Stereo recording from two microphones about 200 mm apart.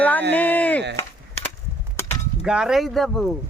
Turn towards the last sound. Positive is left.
turn(degrees=0)  # may be behind; listen again after turning